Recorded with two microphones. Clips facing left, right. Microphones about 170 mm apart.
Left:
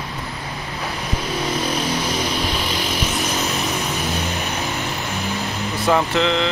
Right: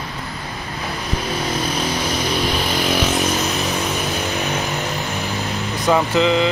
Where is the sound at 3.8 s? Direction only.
20° right (ahead or behind).